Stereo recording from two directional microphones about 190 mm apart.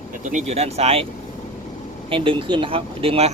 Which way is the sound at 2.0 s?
25° right (ahead or behind).